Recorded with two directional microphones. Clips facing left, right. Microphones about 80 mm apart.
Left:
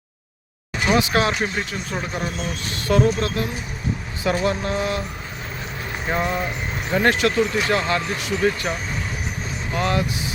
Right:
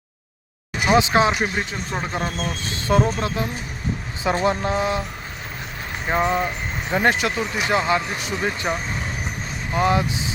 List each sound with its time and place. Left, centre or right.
0.9 s speech: right
6.1 s speech: centre